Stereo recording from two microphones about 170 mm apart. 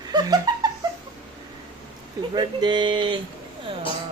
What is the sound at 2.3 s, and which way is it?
Speech, 25° right (ahead or behind).